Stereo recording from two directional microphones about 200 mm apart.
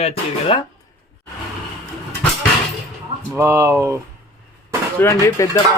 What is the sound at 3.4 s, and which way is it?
Speech, 15° right (ahead or behind).